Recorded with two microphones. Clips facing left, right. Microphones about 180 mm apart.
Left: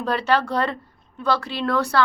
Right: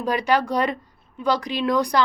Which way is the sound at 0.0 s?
10° right (ahead or behind).